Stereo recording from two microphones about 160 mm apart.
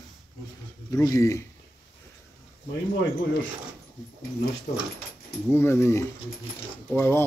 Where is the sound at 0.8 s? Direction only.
20° left (ahead or behind).